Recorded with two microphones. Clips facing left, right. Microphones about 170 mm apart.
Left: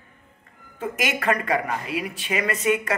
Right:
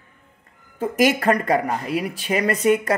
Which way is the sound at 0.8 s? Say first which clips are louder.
Right 7 dB; 35° right (ahead or behind).